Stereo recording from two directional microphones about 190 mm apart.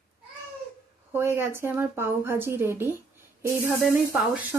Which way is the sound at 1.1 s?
15° right (ahead or behind).